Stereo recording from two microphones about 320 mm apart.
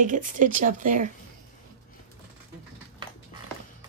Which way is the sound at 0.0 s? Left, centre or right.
Right.